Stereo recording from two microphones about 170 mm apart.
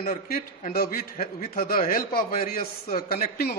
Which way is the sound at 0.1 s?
55° left (ahead or behind).